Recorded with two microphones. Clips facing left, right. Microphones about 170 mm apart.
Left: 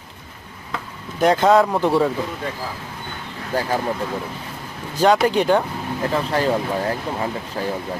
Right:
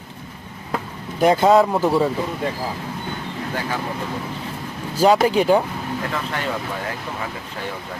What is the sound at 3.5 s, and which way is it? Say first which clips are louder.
Speech: left 6 dB; 40° left (ahead or behind).